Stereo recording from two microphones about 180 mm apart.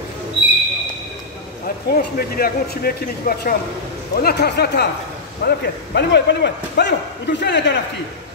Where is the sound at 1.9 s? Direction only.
60° left (ahead or behind).